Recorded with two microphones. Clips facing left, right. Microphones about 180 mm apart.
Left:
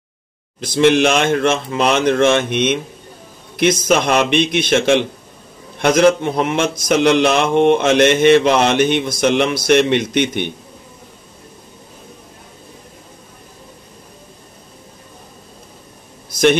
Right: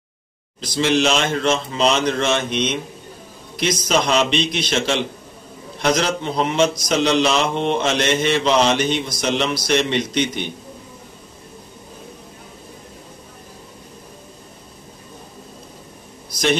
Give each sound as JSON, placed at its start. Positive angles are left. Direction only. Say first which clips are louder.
{"t": 0.6, "sound": "mantra", "louder": "left 6 dB", "side_deg": 55}